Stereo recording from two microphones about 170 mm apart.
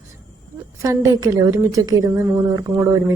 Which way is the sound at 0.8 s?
20° right (ahead or behind).